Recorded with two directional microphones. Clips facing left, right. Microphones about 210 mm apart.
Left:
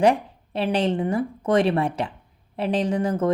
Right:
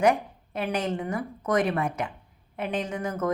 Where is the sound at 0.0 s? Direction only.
30° left (ahead or behind).